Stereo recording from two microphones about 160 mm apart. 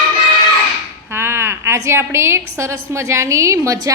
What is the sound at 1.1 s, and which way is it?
A woman's voice, 15° right (ahead or behind).